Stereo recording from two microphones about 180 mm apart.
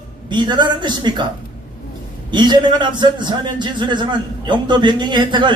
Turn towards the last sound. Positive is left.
turn(degrees=-25)  # may be behind; listen again after turning